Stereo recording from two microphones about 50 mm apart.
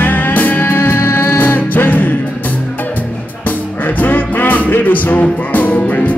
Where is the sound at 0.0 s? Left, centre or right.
Left.